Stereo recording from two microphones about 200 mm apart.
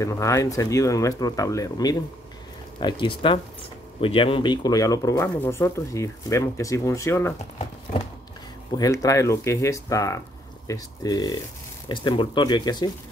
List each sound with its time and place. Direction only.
0.0 s speech: 15° left (ahead or behind)
8.7 s speech: 15° left (ahead or behind)